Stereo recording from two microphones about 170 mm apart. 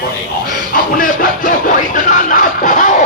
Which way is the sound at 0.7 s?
55° left (ahead or behind).